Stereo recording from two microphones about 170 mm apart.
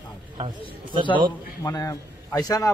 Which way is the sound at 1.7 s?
20° left (ahead or behind).